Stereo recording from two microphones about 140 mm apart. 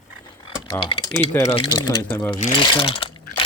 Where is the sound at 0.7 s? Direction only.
35° left (ahead or behind).